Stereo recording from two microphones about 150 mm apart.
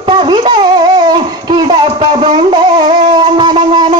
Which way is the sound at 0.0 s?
35° right (ahead or behind).